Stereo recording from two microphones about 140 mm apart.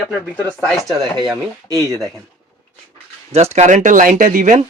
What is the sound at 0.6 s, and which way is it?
Speech, 5° left (ahead or behind).